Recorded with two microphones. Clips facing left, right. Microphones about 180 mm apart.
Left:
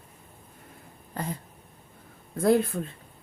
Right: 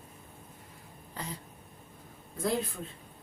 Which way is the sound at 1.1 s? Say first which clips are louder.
Left 7 dB; 55° left (ahead or behind).